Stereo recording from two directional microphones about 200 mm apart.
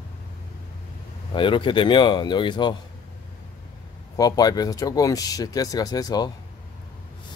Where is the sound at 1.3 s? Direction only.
25° left (ahead or behind).